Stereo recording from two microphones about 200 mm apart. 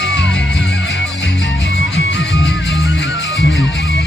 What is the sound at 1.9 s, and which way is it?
Music, 60° left (ahead or behind).